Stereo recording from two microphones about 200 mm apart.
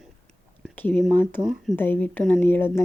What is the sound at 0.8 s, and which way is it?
Speech, 5° left (ahead or behind).